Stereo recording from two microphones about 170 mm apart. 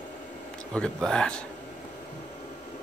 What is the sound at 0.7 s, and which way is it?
Speech, 5° left (ahead or behind).